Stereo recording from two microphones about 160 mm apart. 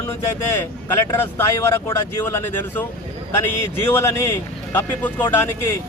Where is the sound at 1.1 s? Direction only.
15° left (ahead or behind).